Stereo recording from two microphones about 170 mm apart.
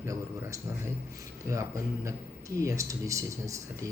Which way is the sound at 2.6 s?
20° right (ahead or behind).